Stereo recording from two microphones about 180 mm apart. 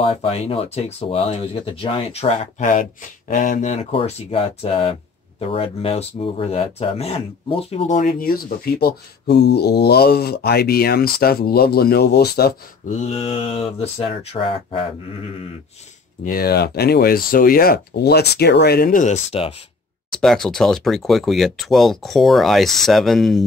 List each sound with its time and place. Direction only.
0.0 s speech: 30° left (ahead or behind); by 12.9 s 60° left (ahead or behind)
13.0 s speech: 35° left (ahead or behind)
16.3 s speech: 55° left (ahead or behind)
19.3 s speech: 30° left (ahead or behind)
20.2 s speech: 5° left (ahead or behind)